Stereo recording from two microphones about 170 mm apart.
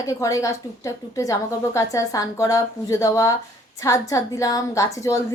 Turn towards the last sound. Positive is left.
turn(degrees=20)  # may be behind; listen again after turning